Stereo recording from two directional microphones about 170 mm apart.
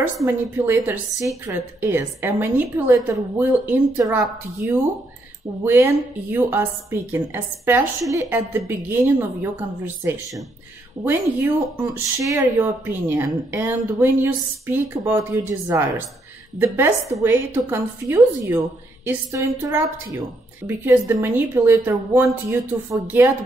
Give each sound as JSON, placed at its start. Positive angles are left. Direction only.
{"t": 0.0, "sound": "speech", "side_deg": -10}
{"t": 11.8, "sound": "speech", "side_deg": -15}